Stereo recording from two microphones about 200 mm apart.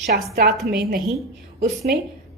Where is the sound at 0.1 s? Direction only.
45° right (ahead or behind).